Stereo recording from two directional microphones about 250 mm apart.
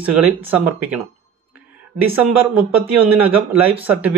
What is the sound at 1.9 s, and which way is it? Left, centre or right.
Speech, right.